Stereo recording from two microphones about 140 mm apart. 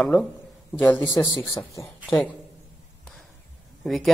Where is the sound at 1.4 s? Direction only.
20° left (ahead or behind).